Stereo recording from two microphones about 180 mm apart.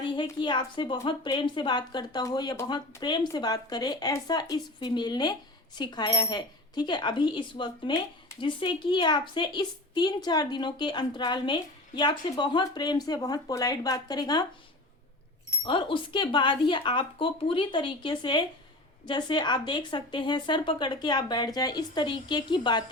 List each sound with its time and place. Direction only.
0.2 s a woman's voice: 25° left (ahead or behind)
15.6 s a woman's voice: 30° left (ahead or behind)